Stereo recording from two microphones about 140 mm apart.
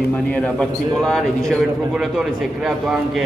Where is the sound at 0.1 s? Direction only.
10° left (ahead or behind).